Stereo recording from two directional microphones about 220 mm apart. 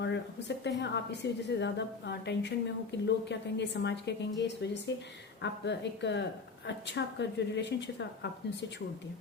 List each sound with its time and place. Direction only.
0.0 s a woman's voice: 50° left (ahead or behind)